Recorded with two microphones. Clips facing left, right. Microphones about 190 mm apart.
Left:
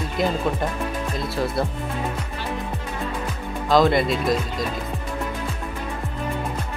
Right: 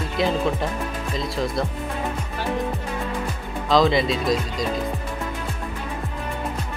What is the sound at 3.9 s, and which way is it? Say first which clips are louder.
Speech: left 1 dB; 55° left (ahead or behind).